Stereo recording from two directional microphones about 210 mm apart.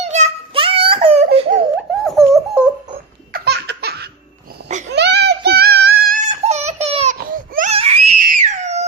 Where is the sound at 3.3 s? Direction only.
50° right (ahead or behind).